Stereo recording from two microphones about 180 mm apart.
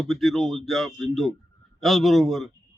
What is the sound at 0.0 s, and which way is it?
A man's voice, centre (ahead or behind).